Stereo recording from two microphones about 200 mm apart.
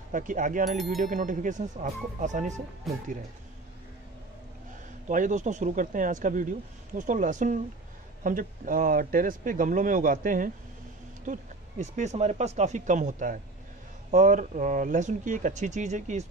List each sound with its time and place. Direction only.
0.1 s speech: 40° right (ahead or behind)
5.0 s speech: 40° right (ahead or behind)